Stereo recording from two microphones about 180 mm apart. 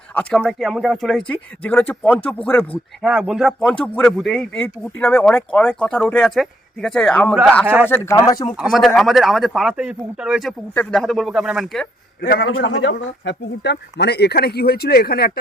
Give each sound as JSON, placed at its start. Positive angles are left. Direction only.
{"t": 0.1, "sound": "speech", "side_deg": 5}
{"t": 3.0, "sound": "speech", "side_deg": -5}
{"t": 7.6, "sound": "speech", "side_deg": -10}
{"t": 7.9, "sound": "speech", "side_deg": 10}
{"t": 8.5, "sound": "speech", "side_deg": 0}
{"t": 12.2, "sound": "speech", "side_deg": 55}